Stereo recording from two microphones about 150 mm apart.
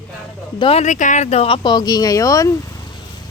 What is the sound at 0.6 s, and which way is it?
Speech, 40° left (ahead or behind).